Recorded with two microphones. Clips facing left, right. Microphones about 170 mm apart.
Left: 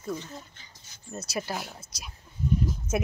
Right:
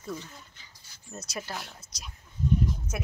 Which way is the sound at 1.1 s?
5° left (ahead or behind).